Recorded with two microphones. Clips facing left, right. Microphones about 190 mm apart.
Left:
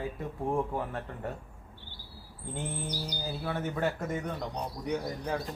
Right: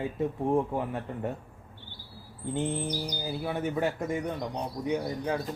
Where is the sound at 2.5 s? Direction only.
20° right (ahead or behind).